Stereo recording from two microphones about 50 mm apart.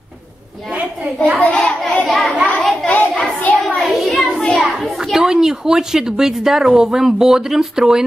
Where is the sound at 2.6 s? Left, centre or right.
Centre.